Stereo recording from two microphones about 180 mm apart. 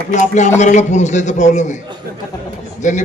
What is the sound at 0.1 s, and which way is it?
A man's voice, 40° left (ahead or behind).